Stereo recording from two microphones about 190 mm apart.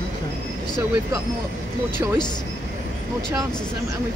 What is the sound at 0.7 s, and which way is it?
Speech, 15° right (ahead or behind).